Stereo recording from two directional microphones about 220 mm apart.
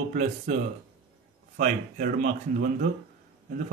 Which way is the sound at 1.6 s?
35° right (ahead or behind).